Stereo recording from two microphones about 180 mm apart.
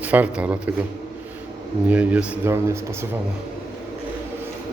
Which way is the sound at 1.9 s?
10° right (ahead or behind).